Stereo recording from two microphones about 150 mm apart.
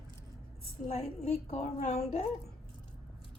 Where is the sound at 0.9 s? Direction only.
45° left (ahead or behind).